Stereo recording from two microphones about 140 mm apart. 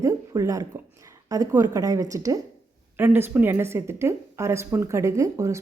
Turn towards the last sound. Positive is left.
turn(degrees=-20)  # may be behind; listen again after turning